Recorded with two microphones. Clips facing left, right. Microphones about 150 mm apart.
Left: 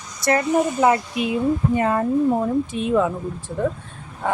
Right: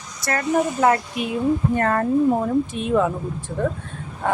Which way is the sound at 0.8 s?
5° left (ahead or behind).